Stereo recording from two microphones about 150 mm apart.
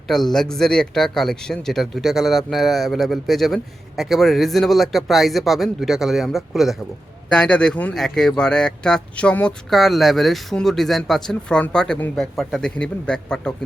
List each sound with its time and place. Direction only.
0.1 s a man's voice: centre (ahead or behind)